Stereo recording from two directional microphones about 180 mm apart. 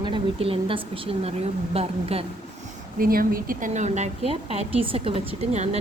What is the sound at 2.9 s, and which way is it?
A woman's voice, 50° right (ahead or behind).